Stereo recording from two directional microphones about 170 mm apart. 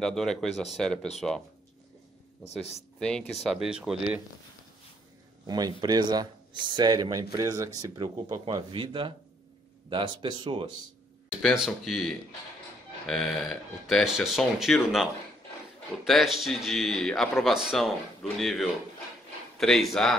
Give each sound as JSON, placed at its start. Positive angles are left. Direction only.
{"t": 0.0, "sound": "speech", "side_deg": 5}
{"t": 3.0, "sound": "speech", "side_deg": 5}
{"t": 5.5, "sound": "speech", "side_deg": -25}
{"t": 11.4, "sound": "speech", "side_deg": 0}